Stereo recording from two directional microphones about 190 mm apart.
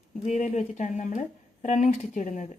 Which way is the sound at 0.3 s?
40° left (ahead or behind).